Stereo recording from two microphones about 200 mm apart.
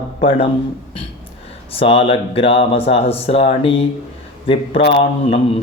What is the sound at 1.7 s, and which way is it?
Speech, 30° left (ahead or behind).